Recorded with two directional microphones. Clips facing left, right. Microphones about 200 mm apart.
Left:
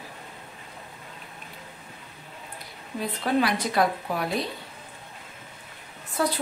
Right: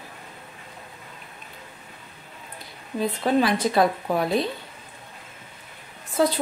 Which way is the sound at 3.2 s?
25° right (ahead or behind).